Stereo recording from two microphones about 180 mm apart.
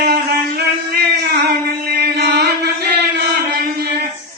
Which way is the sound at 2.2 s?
65° right (ahead or behind).